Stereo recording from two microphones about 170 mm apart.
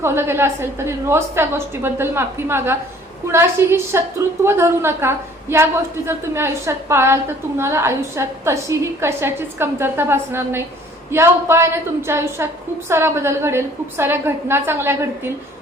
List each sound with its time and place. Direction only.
0.0 s a woman's voice: 15° right (ahead or behind)